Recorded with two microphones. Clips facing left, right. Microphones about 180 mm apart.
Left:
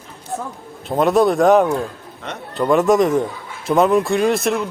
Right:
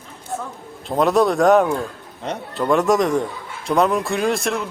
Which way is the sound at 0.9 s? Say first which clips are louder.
Left 2 dB; centre (ahead or behind).